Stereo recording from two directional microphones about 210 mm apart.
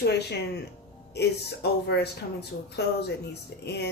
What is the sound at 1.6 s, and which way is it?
Speech, 50° left (ahead or behind).